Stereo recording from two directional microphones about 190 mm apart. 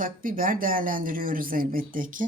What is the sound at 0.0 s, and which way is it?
Speech, 45° right (ahead or behind).